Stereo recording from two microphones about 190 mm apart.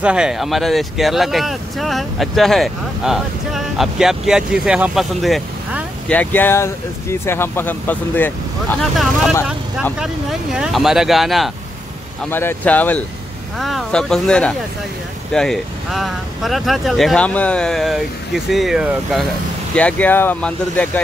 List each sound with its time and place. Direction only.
0.0 s speech: 5° right (ahead or behind)
9.0 s speech: centre (ahead or behind)
12.3 s speech: 10° left (ahead or behind); by 19.2 s 5° right (ahead or behind)
19.7 s speech: 5° left (ahead or behind)